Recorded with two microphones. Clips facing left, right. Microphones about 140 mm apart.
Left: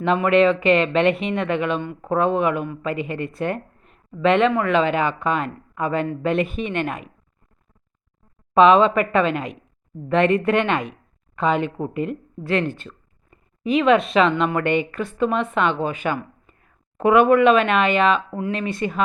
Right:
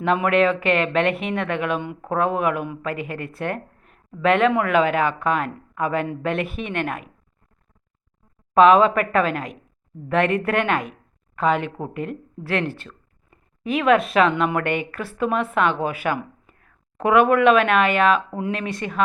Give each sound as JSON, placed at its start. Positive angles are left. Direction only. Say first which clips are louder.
{"t": 0.0, "sound": "speech", "louder": "left 2 dB", "side_deg": 0}
{"t": 8.5, "sound": "speech", "louder": "even", "side_deg": -5}
{"t": 18.2, "sound": "speech", "louder": "even", "side_deg": -20}
{"t": 18.5, "sound": "speech", "louder": "left 3 dB", "side_deg": 0}